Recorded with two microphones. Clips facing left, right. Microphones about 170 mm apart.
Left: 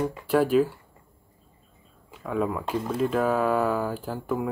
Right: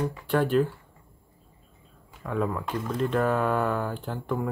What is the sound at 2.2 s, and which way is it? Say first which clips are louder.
Speech: left 1 dB; 5° left (ahead or behind).